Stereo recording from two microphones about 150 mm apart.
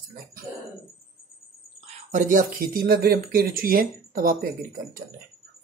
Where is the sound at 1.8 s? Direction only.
60° right (ahead or behind).